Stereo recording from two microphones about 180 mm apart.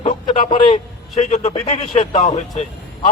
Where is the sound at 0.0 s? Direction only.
30° left (ahead or behind).